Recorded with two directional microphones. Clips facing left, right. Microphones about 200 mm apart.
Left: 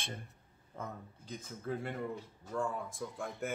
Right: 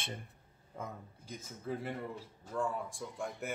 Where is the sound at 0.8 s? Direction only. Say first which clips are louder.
Even; 10° right (ahead or behind).